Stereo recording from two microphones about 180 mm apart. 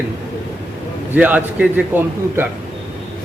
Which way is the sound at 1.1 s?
10° right (ahead or behind).